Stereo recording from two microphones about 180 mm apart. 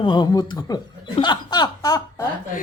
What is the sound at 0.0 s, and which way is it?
Speech, 25° left (ahead or behind).